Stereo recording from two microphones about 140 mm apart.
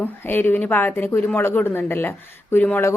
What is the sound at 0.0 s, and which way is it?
Speech, 15° left (ahead or behind).